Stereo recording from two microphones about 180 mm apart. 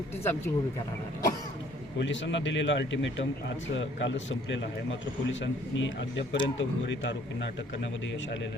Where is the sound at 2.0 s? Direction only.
85° left.